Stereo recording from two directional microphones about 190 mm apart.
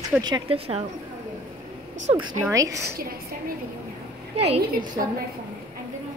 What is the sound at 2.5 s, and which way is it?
Speech, 15° right (ahead or behind).